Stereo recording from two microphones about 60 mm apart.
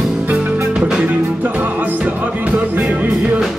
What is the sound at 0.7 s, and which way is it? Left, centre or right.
Music, centre.